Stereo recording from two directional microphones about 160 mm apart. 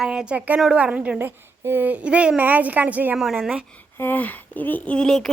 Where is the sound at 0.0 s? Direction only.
5° right (ahead or behind).